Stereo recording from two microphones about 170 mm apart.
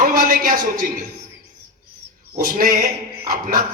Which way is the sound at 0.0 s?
55° right (ahead or behind).